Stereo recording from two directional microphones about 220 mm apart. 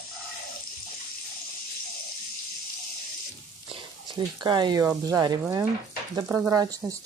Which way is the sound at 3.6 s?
20° right (ahead or behind).